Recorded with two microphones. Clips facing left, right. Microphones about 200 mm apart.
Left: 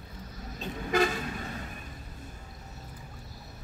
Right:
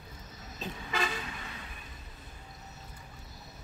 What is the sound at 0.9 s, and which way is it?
Vehicle, 45° left (ahead or behind).